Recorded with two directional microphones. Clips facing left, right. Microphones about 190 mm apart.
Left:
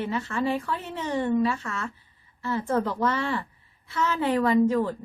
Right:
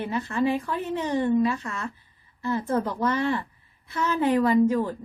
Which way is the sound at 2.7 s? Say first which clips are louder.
Left 1 dB; 15° right (ahead or behind).